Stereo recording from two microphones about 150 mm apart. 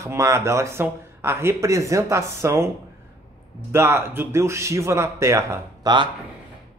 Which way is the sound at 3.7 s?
15° right (ahead or behind).